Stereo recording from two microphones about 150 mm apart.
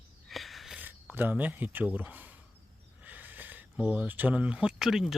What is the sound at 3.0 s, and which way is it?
Speech, 10° right (ahead or behind).